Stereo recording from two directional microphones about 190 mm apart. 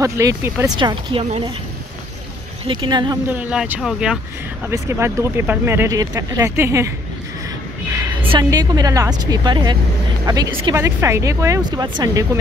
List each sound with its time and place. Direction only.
0.0 s a woman's voice: 15° right (ahead or behind)
2.9 s a woman's voice: 20° right (ahead or behind)
3.3 s speech: 5° right (ahead or behind)
7.9 s a sound: 15° right (ahead or behind)
8.3 s a woman's voice: 20° right (ahead or behind)